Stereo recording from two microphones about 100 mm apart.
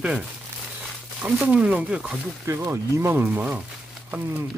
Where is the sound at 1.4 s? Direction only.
15° right (ahead or behind).